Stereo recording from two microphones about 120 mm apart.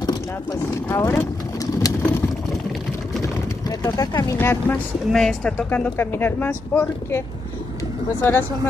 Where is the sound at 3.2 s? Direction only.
30° left (ahead or behind).